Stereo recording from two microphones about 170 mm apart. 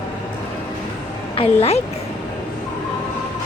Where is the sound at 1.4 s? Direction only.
35° left (ahead or behind).